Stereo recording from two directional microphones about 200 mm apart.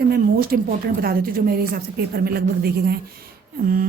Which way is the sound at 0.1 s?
50° right (ahead or behind).